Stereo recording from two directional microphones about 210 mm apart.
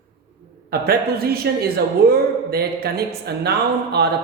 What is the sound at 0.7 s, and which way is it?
A man's voice, 45° right (ahead or behind).